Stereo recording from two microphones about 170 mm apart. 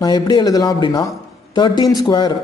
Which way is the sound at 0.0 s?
25° left (ahead or behind).